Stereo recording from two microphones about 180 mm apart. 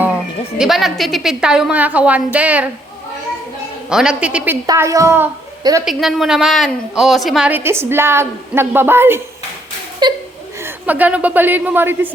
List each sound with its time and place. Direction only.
0.6 s a woman's voice: centre (ahead or behind)
3.8 s a woman's voice: 5° right (ahead or behind)
4.6 s a woman's voice: 20° right (ahead or behind)
5.8 s a woman's voice: centre (ahead or behind)
10.0 s speech: 25° right (ahead or behind)
10.6 s a woman's voice: 10° right (ahead or behind)